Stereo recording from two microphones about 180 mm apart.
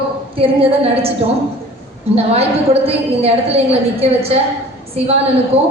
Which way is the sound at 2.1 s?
35° right (ahead or behind).